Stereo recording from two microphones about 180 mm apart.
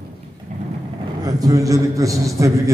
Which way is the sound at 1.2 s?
20° right (ahead or behind).